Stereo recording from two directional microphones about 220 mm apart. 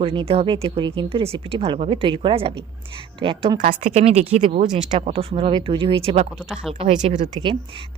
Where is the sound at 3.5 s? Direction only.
35° right (ahead or behind).